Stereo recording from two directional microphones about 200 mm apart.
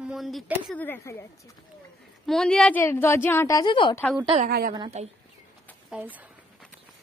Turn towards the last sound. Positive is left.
turn(degrees=-10)  # may be behind; listen again after turning